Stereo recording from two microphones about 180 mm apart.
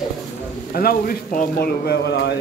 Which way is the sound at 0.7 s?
55° left (ahead or behind).